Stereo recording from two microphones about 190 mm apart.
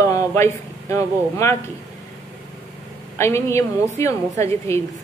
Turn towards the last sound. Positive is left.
turn(degrees=15)  # may be behind; listen again after turning